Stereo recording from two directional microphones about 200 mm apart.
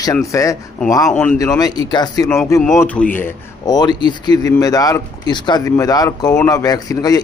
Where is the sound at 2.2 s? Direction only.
10° left (ahead or behind).